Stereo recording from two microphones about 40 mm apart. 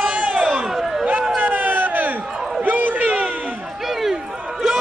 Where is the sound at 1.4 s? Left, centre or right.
Right.